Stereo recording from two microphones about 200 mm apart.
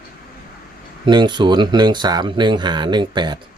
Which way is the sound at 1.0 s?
20° right (ahead or behind).